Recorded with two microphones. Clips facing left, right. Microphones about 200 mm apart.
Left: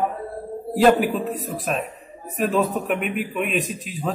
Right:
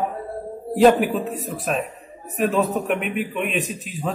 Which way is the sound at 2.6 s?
40° right (ahead or behind).